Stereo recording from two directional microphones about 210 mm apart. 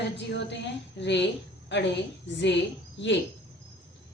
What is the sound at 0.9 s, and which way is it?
A woman's voice, 55° left (ahead or behind).